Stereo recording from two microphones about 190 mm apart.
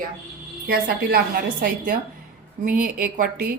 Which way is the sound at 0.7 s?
50° right (ahead or behind).